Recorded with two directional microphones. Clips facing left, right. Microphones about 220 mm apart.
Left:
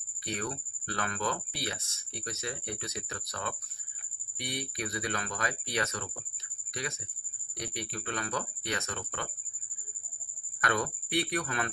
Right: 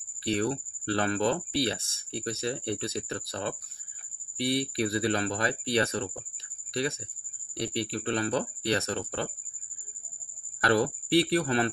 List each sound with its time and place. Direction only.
0.2 s speech: 30° right (ahead or behind)
10.6 s speech: 30° right (ahead or behind)